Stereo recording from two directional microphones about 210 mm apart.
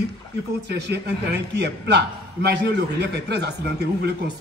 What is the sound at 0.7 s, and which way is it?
A man's voice, 55° right (ahead or behind).